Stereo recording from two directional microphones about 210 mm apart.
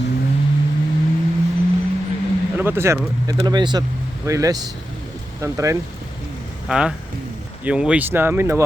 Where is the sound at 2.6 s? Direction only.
10° right (ahead or behind).